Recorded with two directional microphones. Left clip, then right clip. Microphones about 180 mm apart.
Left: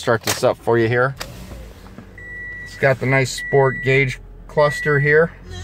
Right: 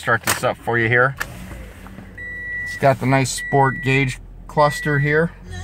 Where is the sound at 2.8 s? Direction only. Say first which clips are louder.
Even; 10° right (ahead or behind).